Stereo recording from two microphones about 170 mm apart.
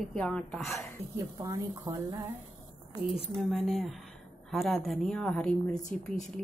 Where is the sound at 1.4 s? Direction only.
20° right (ahead or behind).